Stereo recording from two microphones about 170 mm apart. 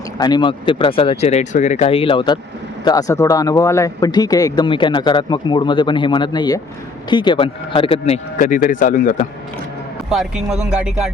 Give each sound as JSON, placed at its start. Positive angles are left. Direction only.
{"t": 0.2, "sound": "speech", "side_deg": 25}
{"t": 10.1, "sound": "speech", "side_deg": 0}